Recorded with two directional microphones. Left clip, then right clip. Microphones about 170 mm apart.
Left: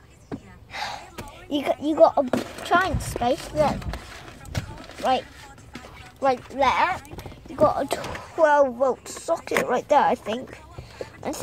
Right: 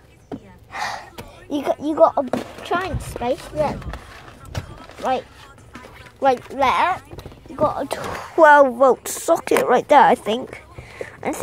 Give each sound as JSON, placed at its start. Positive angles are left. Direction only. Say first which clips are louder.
{"t": 0.7, "sound": "gasp", "louder": "right 5 dB", "side_deg": -40}
{"t": 1.5, "sound": "speech", "louder": "right 2 dB", "side_deg": -25}
{"t": 2.3, "sound": "speech", "louder": "right 1 dB", "side_deg": 0}
{"t": 2.6, "sound": "speech", "louder": "left 3 dB", "side_deg": -20}
{"t": 3.1, "sound": "speech", "louder": "even", "side_deg": -5}
{"t": 6.2, "sound": "speech", "louder": "right 4 dB", "side_deg": -45}
{"t": 7.5, "sound": "speech", "louder": "even", "side_deg": -10}
{"t": 8.0, "sound": "speech", "louder": "right 10 dB", "side_deg": -45}